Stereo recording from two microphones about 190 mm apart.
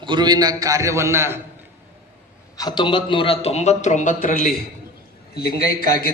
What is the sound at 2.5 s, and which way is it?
A man's voice, 20° left (ahead or behind).